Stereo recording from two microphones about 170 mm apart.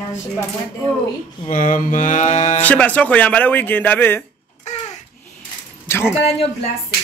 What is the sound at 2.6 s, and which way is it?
Speech, 10° left (ahead or behind).